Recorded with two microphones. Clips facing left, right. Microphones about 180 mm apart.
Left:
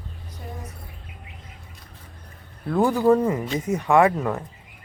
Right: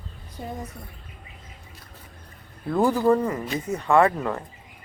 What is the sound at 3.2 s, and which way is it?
Speech, 15° left (ahead or behind).